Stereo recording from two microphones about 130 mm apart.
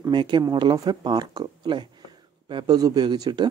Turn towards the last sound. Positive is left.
turn(degrees=-35)  # may be behind; listen again after turning